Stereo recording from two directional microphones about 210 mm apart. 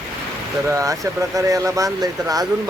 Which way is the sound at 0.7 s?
15° right (ahead or behind).